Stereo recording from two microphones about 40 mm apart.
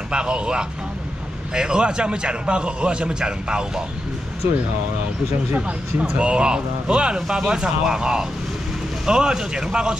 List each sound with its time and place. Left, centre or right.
0.1 s a man's voice: right
5.5 s a man's voice: right